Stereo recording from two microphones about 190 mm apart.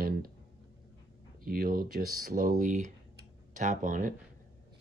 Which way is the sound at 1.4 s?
50° right (ahead or behind).